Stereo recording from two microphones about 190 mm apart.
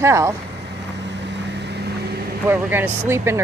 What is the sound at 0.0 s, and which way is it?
Speech, 15° right (ahead or behind).